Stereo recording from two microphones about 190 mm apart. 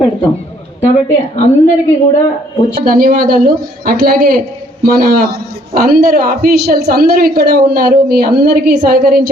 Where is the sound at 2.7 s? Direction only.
50° right (ahead or behind).